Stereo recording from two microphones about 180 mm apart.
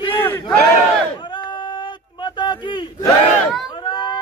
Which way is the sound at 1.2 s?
25° left (ahead or behind).